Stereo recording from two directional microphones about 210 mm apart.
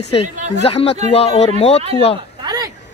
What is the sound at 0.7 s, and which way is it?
Speech, 30° left (ahead or behind).